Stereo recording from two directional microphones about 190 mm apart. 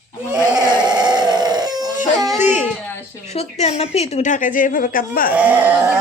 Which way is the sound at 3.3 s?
35° left (ahead or behind).